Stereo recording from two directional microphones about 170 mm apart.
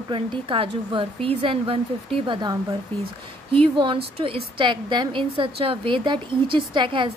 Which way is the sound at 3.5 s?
30° right (ahead or behind).